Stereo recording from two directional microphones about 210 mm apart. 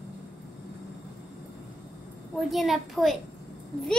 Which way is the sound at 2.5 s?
Centre (ahead or behind).